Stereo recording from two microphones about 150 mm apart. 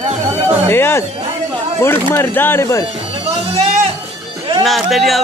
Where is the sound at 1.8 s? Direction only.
15° left (ahead or behind).